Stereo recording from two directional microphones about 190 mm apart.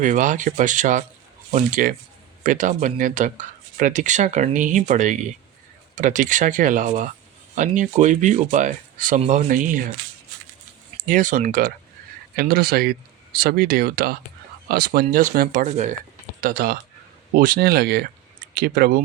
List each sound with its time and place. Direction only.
0.0 s speech: 40° right (ahead or behind)
10.9 s speech: 45° right (ahead or behind)